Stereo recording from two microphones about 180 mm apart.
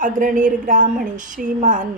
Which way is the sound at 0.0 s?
45° right (ahead or behind).